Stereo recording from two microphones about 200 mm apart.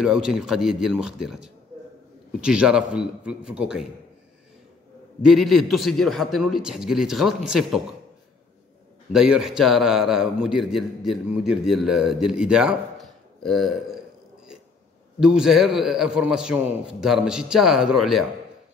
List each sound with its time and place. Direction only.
0.0 s a man's voice: centre (ahead or behind)
5.2 s a man's voice: centre (ahead or behind)
9.1 s a man's voice: 5° right (ahead or behind)
15.1 s a man's voice: 5° right (ahead or behind)